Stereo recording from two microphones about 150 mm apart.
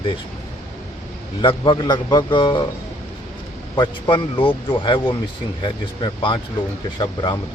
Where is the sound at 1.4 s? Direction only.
35° left (ahead or behind).